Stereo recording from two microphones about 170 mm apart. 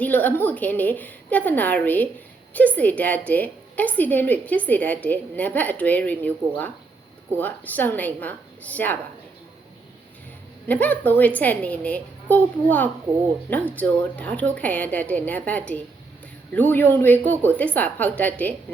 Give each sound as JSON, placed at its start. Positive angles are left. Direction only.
{"t": 0.0, "sound": "a woman's voice", "side_deg": 10}
{"t": 10.7, "sound": "a woman's voice", "side_deg": 10}